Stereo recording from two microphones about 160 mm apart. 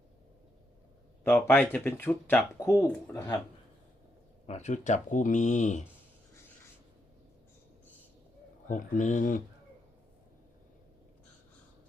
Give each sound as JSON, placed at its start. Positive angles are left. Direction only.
{"t": 1.2, "sound": "speech", "side_deg": 15}
{"t": 4.4, "sound": "speech", "side_deg": 45}
{"t": 8.7, "sound": "speech", "side_deg": 50}